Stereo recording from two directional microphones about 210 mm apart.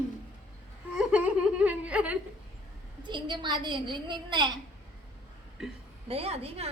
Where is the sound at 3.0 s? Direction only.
20° right (ahead or behind).